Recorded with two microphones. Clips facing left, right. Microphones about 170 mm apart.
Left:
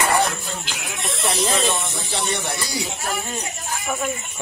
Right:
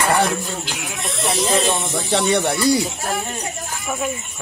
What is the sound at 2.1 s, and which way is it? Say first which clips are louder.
Speech: right 9 dB; 60° right (ahead or behind).